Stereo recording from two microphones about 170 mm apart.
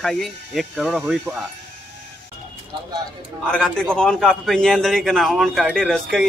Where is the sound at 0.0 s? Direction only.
Centre (ahead or behind).